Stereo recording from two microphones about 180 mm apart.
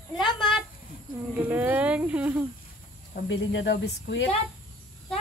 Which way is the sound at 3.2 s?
90° left.